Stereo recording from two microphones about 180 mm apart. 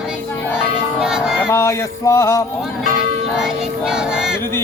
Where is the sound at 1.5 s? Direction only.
15° left (ahead or behind).